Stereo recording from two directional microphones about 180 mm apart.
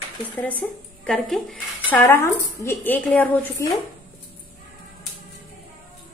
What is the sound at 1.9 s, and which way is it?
A woman's voice, 10° left (ahead or behind).